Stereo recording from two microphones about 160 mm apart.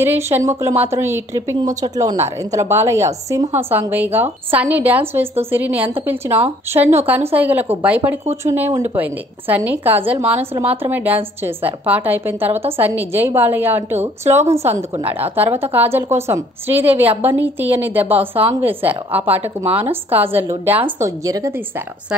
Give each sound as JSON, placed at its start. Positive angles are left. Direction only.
{"t": 0.0, "sound": "a woman's voice", "side_deg": -15}